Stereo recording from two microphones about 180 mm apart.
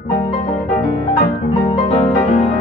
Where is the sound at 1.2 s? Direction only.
40° left (ahead or behind).